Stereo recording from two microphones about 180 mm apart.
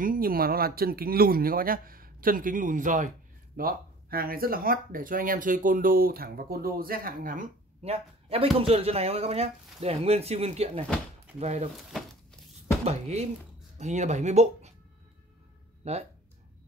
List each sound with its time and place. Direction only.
0.0 s speech: 55° right (ahead or behind)
7.8 s speech: 35° right (ahead or behind)
12.8 s speech: 35° right (ahead or behind)
15.8 s speech: 35° right (ahead or behind)